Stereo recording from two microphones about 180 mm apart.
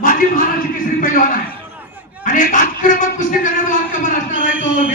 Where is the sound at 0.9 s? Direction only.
50° left (ahead or behind).